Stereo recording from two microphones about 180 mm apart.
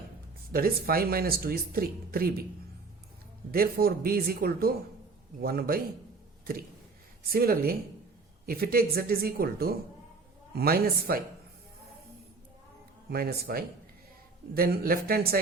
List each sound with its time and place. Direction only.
0.5 s speech: 55° right (ahead or behind)
3.5 s speech: 55° right (ahead or behind)
13.1 s speech: 60° right (ahead or behind)